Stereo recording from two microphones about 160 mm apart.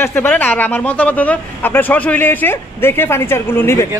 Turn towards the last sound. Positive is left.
turn(degrees=15)  # may be behind; listen again after turning